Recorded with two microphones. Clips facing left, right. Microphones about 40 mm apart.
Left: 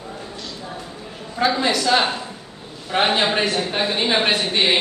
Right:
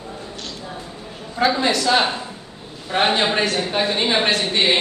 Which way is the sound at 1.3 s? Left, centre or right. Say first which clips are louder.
Right 1 dB; centre.